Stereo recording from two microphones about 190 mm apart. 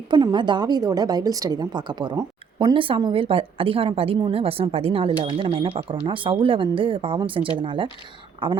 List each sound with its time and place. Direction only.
0.1 s a woman's voice: 25° right (ahead or behind)